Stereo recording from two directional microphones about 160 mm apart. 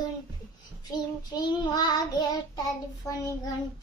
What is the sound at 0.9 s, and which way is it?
Child singing, 25° left (ahead or behind).